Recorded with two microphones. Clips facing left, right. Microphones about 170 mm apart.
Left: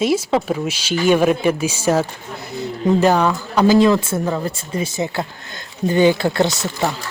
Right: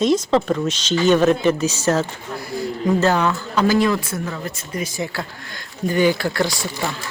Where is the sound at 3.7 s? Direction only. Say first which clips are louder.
Left 5 dB; 25° left (ahead or behind).